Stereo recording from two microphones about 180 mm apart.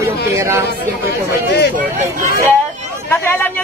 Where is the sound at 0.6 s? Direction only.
65° left (ahead or behind).